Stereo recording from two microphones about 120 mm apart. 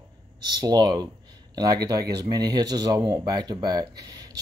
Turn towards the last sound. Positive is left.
turn(degrees=-30)  # may be behind; listen again after turning